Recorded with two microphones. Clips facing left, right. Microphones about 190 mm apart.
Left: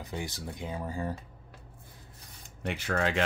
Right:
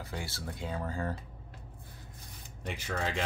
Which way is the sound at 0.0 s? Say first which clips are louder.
Left 3 dB; 20° left (ahead or behind).